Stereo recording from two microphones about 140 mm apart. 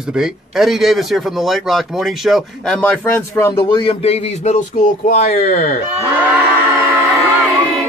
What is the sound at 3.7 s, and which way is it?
Speech, 40° left (ahead or behind).